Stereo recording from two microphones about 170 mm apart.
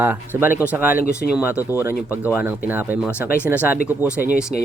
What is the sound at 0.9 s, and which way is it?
Speech, 60° left (ahead or behind).